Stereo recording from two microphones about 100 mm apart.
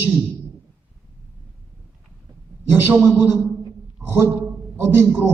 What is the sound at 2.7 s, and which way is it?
A man's voice, 20° right (ahead or behind).